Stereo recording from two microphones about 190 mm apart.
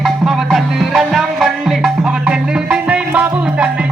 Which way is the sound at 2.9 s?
5° right (ahead or behind).